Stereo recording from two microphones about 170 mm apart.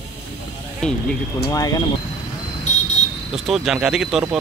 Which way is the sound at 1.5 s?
20° left (ahead or behind).